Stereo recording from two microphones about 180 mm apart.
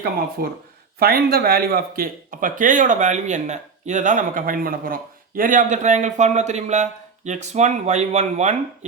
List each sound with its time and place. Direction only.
0.4 s speech: 55° right (ahead or behind); by 8.9 s 40° right (ahead or behind)